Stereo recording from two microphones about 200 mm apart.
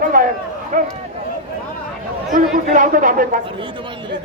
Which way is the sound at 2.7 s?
40° right (ahead or behind).